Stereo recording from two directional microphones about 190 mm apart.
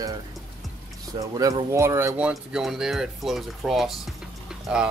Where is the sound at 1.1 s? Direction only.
20° right (ahead or behind).